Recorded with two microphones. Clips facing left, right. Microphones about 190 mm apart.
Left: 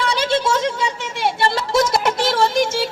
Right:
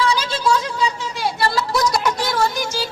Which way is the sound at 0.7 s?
25° left (ahead or behind).